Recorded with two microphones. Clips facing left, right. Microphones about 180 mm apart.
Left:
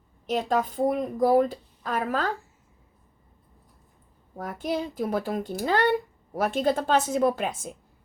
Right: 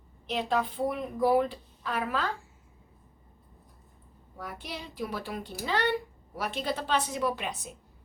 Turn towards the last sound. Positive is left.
turn(degrees=50)  # may be behind; listen again after turning